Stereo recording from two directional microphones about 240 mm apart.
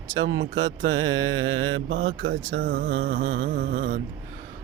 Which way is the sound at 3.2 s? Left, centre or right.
Right.